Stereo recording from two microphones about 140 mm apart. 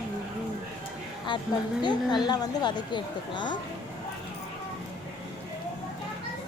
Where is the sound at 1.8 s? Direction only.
30° left (ahead or behind).